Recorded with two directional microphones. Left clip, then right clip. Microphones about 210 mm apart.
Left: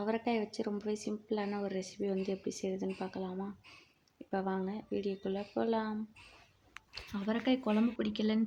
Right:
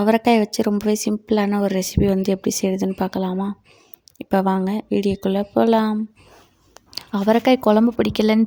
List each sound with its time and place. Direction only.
0.0 s speech: 50° right (ahead or behind)